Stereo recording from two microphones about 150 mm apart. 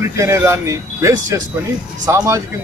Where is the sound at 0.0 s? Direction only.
20° right (ahead or behind).